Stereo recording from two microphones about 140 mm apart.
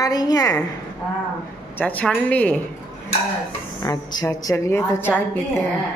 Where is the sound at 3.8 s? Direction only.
30° left (ahead or behind).